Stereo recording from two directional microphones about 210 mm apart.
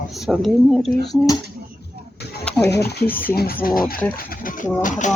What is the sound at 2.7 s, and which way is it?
Speech, 50° left (ahead or behind).